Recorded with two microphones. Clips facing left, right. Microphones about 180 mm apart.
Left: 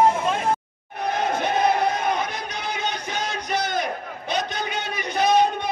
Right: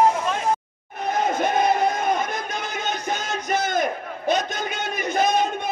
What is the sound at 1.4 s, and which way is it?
Music, 45° right (ahead or behind).